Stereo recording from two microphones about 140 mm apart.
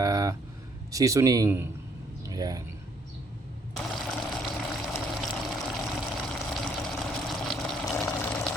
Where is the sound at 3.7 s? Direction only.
5° left (ahead or behind).